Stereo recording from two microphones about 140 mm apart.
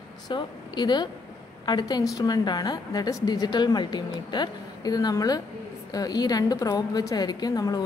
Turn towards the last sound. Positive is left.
turn(degrees=30)  # may be behind; listen again after turning